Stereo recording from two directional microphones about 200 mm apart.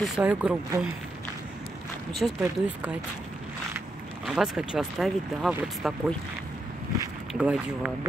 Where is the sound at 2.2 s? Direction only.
5° right (ahead or behind).